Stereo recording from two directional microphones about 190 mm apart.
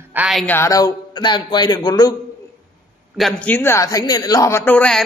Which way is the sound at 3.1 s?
5° left (ahead or behind).